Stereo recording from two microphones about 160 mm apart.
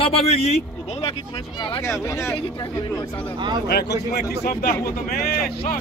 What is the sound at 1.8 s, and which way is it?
Speech, 20° left (ahead or behind).